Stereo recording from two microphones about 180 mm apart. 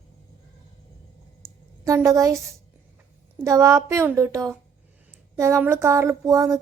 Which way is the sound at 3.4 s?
15° right (ahead or behind).